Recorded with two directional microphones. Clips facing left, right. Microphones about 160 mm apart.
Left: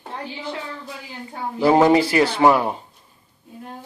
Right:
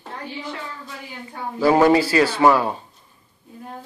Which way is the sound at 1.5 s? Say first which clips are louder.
Even; 20° left (ahead or behind).